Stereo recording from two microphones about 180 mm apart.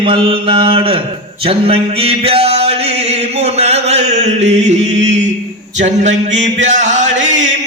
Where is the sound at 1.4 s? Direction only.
30° right (ahead or behind).